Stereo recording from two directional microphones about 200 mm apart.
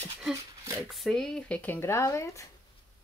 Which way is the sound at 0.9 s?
Centre (ahead or behind).